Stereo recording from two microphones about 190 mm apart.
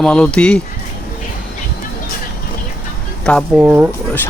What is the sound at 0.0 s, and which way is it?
Speech, 5° left (ahead or behind).